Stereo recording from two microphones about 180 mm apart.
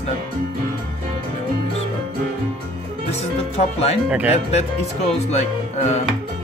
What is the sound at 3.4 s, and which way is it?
Speech, 35° left (ahead or behind).